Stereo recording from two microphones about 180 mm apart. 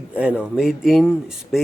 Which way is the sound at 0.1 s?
10° right (ahead or behind).